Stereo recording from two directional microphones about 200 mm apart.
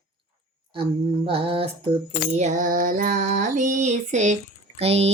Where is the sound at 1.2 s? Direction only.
30° right (ahead or behind).